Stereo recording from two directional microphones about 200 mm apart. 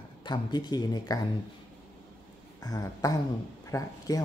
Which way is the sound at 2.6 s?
15° left (ahead or behind).